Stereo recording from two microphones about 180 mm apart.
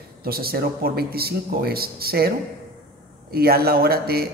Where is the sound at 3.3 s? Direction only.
60° right (ahead or behind).